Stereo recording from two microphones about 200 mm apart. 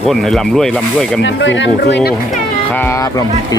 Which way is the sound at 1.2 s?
65° left (ahead or behind).